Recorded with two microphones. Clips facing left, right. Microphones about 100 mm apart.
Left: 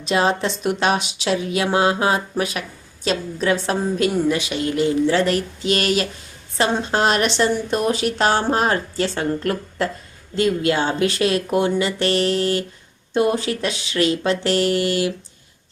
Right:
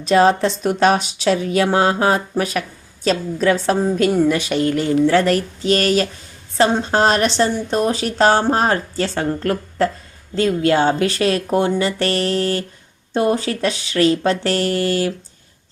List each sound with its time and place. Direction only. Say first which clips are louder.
0.0 s speech: right 5 dB; 40° right (ahead or behind)